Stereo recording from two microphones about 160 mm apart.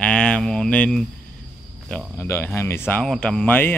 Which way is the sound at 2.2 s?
15° left (ahead or behind).